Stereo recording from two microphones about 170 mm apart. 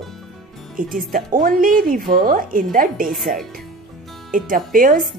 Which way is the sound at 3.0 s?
Centre (ahead or behind).